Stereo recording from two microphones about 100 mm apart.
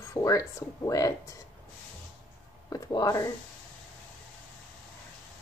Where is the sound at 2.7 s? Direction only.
40° left (ahead or behind).